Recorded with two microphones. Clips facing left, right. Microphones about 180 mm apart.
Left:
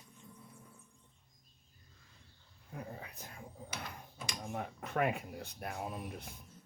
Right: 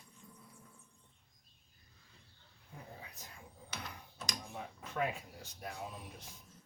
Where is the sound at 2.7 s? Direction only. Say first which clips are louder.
Left 6 dB; 55° left (ahead or behind).